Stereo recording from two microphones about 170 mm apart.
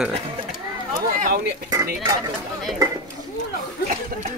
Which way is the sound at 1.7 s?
20° right (ahead or behind).